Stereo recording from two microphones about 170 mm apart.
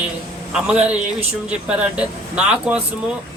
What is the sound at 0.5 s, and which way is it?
Speech, 5° right (ahead or behind).